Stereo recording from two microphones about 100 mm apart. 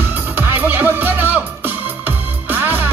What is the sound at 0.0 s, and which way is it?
Music, 20° right (ahead or behind).